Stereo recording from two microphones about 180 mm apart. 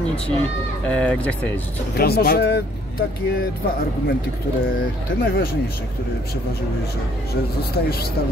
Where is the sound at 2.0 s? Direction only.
60° left (ahead or behind).